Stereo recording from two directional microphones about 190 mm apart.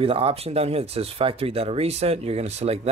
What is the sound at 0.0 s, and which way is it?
Speech, 30° right (ahead or behind).